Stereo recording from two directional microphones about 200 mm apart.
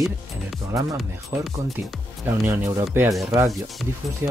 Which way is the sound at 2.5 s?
15° right (ahead or behind).